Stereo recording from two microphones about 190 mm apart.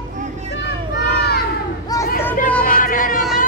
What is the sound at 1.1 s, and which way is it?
Children playing, 55° left (ahead or behind).